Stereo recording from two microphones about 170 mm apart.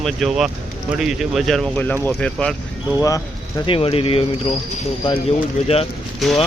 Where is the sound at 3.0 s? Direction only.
20° left (ahead or behind).